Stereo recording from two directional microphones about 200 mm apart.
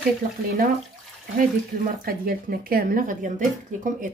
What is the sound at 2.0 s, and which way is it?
Speech, 45° right (ahead or behind).